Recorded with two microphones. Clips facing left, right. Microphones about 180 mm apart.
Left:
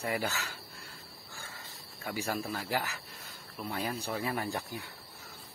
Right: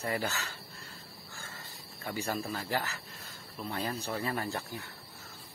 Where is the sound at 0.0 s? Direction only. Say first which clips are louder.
Even; 10° left (ahead or behind).